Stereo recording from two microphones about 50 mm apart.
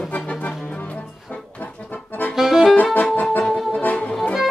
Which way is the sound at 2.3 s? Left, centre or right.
Centre.